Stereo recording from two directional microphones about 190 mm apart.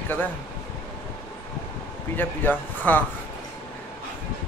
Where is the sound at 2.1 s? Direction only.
10° left (ahead or behind).